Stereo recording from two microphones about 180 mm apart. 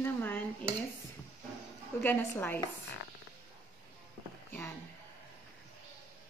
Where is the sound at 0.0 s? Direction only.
10° left (ahead or behind).